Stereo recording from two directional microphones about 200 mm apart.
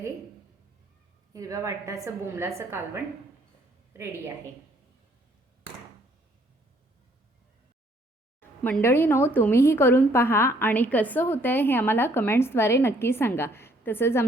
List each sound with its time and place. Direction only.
1.3 s a woman's voice: 15° right (ahead or behind)
8.4 s speech: 10° left (ahead or behind)